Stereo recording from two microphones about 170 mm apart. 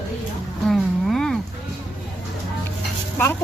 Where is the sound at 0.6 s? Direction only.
Centre (ahead or behind).